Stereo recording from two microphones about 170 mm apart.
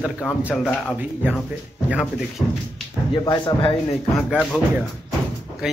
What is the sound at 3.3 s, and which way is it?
Speech, 30° left (ahead or behind).